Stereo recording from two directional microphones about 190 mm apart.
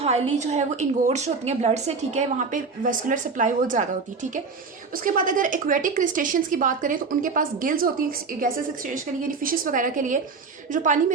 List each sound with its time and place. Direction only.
0.0 s a woman's voice: 35° right (ahead or behind)